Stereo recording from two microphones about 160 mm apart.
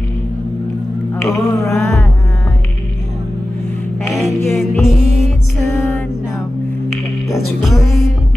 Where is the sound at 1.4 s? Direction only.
20° left (ahead or behind).